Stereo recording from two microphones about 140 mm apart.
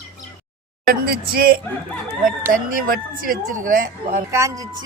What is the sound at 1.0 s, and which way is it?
Speech, 90° right.